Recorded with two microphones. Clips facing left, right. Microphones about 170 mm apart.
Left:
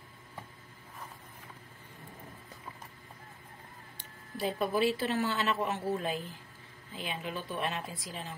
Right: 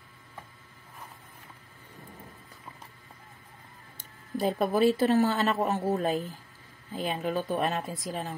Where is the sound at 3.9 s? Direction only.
45° right (ahead or behind).